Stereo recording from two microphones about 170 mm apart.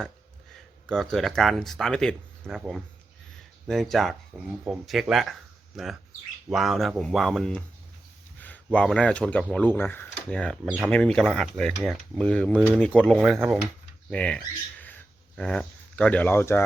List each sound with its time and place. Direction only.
0.9 s speech: centre (ahead or behind)